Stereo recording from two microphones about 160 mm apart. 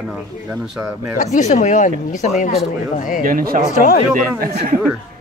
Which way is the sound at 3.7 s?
60° left (ahead or behind).